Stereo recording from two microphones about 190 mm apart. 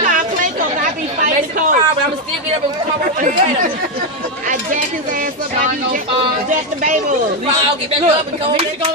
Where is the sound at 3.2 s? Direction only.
40° right (ahead or behind).